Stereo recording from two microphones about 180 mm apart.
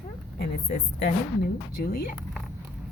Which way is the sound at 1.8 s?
60° left (ahead or behind).